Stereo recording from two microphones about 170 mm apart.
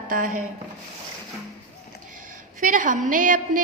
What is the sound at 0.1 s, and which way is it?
Speech, 55° right (ahead or behind).